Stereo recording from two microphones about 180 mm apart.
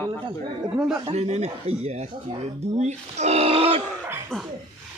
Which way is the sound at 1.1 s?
35° right (ahead or behind).